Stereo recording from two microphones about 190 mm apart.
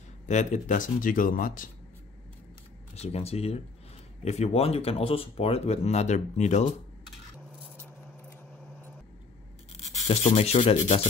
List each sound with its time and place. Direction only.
0.3 s speech: 40° left (ahead or behind)
3.0 s speech: 35° left (ahead or behind)
10.0 s speech: 35° left (ahead or behind)